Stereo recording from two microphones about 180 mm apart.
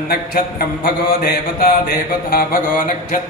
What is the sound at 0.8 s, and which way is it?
Mantra, 55° left (ahead or behind).